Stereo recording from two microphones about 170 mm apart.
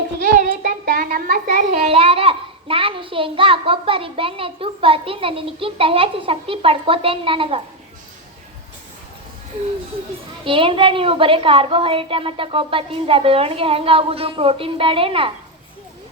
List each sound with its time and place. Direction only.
0.2 s child singing: 55° right (ahead or behind)
1.9 s a child's voice: 35° right (ahead or behind)
10.4 s a woman's voice: 30° right (ahead or behind)